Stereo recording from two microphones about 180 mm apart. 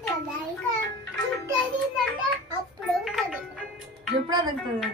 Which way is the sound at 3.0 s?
Centre (ahead or behind).